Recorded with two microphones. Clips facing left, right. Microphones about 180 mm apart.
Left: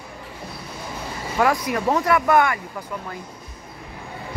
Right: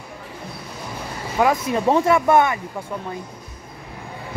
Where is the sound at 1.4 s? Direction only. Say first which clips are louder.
Right 2 dB; 25° right (ahead or behind).